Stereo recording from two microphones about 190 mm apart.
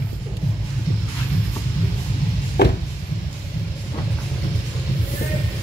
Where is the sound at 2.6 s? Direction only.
60° left (ahead or behind).